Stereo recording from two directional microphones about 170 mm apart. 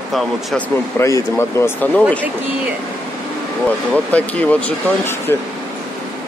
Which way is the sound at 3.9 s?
10° left (ahead or behind).